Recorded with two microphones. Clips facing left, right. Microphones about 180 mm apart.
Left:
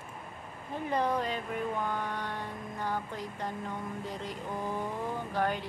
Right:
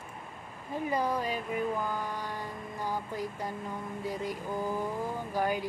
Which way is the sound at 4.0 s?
10° right (ahead or behind).